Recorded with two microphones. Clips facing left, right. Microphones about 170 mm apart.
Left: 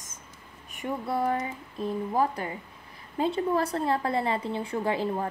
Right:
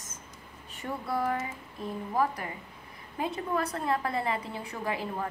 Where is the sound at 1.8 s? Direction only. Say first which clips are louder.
Left 3 dB; 25° left (ahead or behind).